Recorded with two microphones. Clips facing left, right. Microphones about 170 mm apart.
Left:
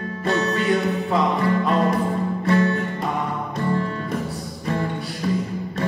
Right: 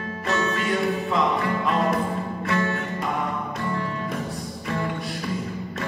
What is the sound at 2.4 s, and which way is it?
Music, 35° left (ahead or behind).